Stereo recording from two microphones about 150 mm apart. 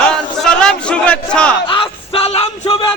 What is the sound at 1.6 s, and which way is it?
Music, 35° left (ahead or behind).